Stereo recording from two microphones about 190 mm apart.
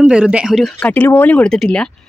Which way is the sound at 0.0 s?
5° right (ahead or behind).